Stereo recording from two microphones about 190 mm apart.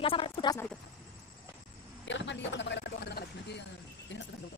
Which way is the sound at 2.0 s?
70° left (ahead or behind).